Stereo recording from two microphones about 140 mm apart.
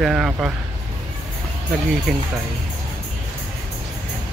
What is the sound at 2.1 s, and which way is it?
Speech, 5° right (ahead or behind).